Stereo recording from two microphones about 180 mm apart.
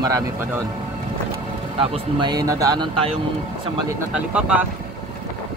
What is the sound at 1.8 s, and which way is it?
Speech, 25° right (ahead or behind).